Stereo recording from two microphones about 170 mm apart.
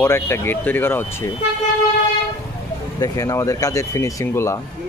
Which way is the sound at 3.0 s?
20° left (ahead or behind).